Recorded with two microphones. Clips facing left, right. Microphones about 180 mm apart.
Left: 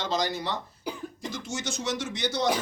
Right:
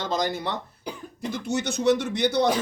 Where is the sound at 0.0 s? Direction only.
55° right (ahead or behind).